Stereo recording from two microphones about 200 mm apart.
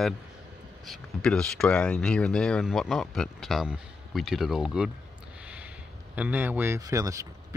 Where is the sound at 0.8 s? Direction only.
Centre (ahead or behind).